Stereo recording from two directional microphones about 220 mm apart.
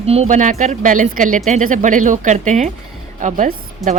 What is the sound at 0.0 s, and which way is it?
A woman's voice, 30° right (ahead or behind).